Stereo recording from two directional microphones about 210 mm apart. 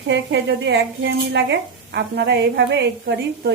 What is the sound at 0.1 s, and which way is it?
A woman's voice, 55° right (ahead or behind).